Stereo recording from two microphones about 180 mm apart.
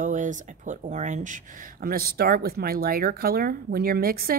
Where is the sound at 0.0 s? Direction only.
45° right (ahead or behind).